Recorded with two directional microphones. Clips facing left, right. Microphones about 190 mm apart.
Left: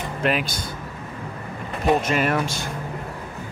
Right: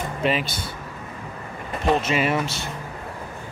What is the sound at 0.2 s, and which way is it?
Speech, centre (ahead or behind).